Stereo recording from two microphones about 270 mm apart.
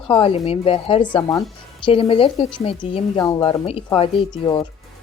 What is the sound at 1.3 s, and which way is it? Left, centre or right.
Speech, centre.